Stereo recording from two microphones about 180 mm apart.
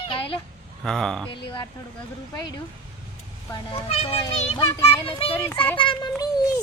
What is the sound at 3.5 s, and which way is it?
Speech, 20° left (ahead or behind).